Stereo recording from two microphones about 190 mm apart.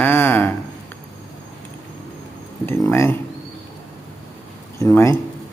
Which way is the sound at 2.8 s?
15° left (ahead or behind).